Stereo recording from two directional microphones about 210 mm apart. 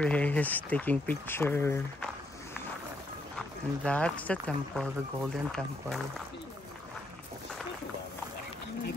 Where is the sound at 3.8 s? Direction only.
5° left (ahead or behind).